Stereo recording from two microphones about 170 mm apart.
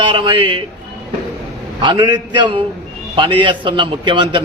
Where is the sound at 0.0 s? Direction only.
30° right (ahead or behind).